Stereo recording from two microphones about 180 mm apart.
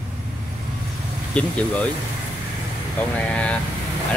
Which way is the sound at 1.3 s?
5° left (ahead or behind).